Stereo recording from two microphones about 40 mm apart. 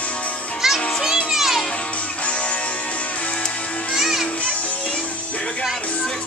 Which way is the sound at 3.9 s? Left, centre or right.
Centre.